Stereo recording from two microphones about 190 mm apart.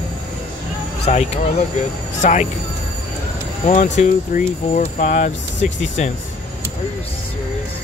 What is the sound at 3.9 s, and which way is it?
Speech, 40° left (ahead or behind).